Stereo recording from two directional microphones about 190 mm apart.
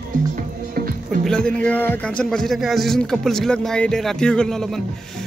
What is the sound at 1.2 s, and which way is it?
Speech, 5° left (ahead or behind).